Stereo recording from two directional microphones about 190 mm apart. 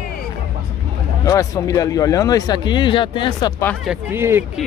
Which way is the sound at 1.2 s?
20° left (ahead or behind).